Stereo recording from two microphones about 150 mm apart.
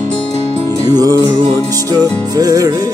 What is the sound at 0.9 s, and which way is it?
Music, 25° right (ahead or behind).